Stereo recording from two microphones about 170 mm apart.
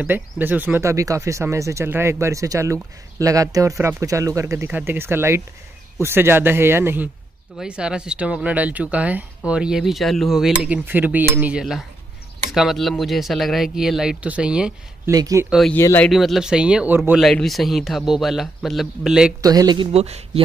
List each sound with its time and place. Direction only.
0.0 s speech: 10° right (ahead or behind)
15.0 s speech: 20° right (ahead or behind)
15.7 s speech: 10° left (ahead or behind)
16.1 s speech: centre (ahead or behind)
17.2 s speech: centre (ahead or behind)
19.4 s speech: 20° right (ahead or behind); by 20.4 s 40° right (ahead or behind)